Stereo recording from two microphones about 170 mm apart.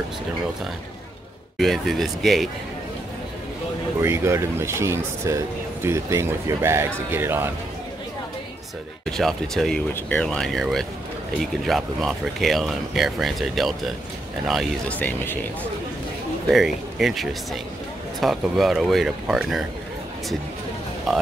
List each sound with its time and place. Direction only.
1.6 s speech: centre (ahead or behind)
4.0 s speech: 15° right (ahead or behind)
9.0 s speech: centre (ahead or behind)
16.4 s speech: centre (ahead or behind)
21.1 s speech: centre (ahead or behind)